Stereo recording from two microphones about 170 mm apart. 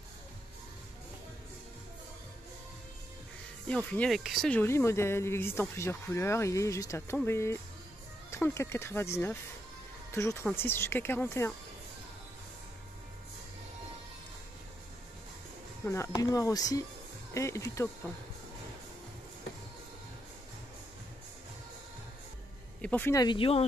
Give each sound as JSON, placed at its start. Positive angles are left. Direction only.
{"t": 3.6, "sound": "speech", "side_deg": 5}
{"t": 15.8, "sound": "speech", "side_deg": 15}
{"t": 22.8, "sound": "speech", "side_deg": 10}
{"t": 23.2, "sound": "speech", "side_deg": 30}